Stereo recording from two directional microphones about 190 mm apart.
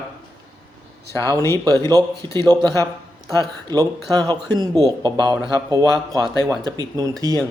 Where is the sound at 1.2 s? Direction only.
20° right (ahead or behind).